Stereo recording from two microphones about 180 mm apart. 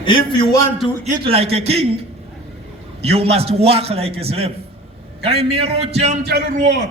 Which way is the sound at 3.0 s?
35° right (ahead or behind).